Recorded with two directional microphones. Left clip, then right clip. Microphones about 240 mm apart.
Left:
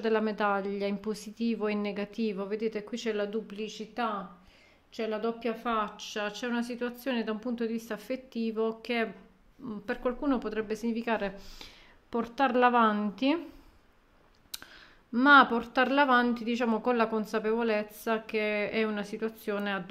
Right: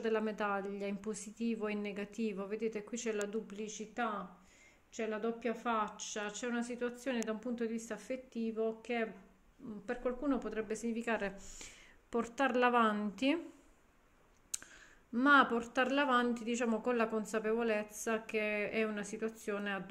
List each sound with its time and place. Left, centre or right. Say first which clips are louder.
0.0 s speech: left 7 dB; left
14.5 s speech: left 3 dB; centre